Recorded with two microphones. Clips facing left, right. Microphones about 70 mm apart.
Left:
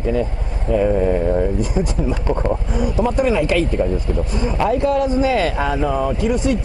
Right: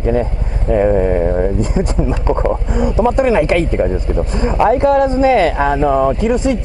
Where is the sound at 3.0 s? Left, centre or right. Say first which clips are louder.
Right 5 dB; right.